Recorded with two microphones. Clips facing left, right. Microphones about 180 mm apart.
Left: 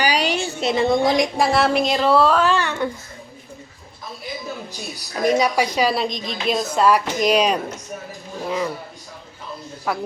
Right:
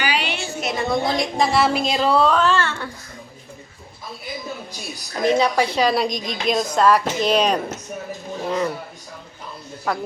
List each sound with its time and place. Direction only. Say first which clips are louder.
0.0 s a sound: left 4 dB; 40° left (ahead or behind); by 1.3 s 15° left (ahead or behind)
1.4 s a child's voice: left 1 dB; centre (ahead or behind); by 2.9 s 15° left (ahead or behind)
5.1 s a child's voice: even; 10° left (ahead or behind)
9.9 s speech: even; 5° left (ahead or behind)